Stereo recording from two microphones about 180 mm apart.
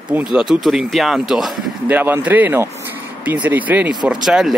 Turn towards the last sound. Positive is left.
turn(degrees=0)  # may be behind; listen again after turning